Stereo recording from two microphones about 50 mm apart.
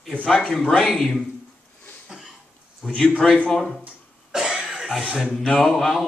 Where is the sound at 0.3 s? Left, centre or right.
Centre.